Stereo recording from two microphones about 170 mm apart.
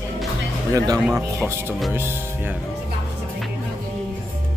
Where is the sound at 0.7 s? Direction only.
15° right (ahead or behind).